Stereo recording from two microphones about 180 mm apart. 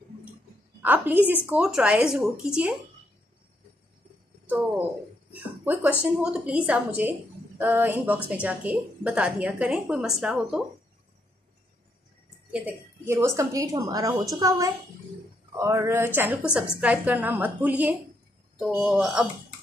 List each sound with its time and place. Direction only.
0.8 s a woman's voice: 10° right (ahead or behind)
5.3 s a woman's voice: 10° right (ahead or behind)
12.5 s a woman's voice: 10° right (ahead or behind)